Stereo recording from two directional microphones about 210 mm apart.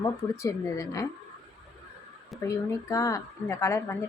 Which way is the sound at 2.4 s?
15° left (ahead or behind).